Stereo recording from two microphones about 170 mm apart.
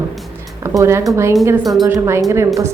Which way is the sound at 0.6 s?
15° right (ahead or behind).